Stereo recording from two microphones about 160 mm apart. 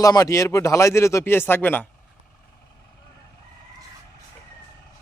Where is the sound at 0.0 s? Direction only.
20° left (ahead or behind).